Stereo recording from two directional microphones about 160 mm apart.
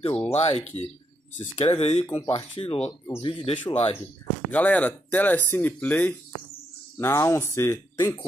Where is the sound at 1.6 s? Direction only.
40° left (ahead or behind).